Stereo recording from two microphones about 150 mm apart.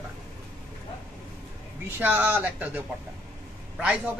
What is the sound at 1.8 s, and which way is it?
Speech, 15° right (ahead or behind).